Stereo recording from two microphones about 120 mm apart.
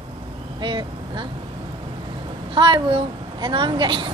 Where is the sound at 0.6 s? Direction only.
40° right (ahead or behind).